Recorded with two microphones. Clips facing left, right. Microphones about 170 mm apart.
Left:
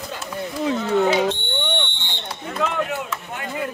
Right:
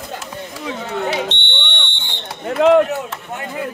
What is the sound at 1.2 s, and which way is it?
Smoke detector, 90° right.